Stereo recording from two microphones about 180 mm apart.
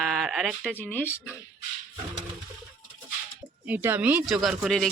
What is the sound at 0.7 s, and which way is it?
Speech, 10° left (ahead or behind).